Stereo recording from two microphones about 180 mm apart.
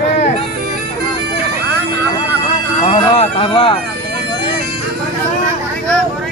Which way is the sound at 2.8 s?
30° left (ahead or behind).